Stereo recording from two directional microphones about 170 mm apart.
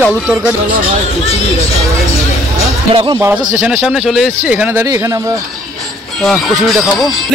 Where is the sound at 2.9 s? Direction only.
35° right (ahead or behind).